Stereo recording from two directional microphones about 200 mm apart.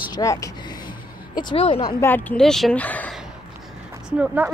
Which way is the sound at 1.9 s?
10° left (ahead or behind).